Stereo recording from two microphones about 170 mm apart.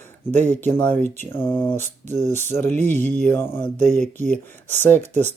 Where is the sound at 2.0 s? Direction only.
45° right (ahead or behind).